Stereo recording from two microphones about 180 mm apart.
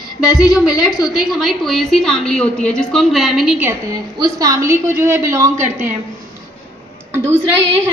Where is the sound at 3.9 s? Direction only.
20° right (ahead or behind).